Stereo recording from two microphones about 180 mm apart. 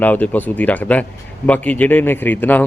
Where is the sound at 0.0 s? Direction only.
10° left (ahead or behind).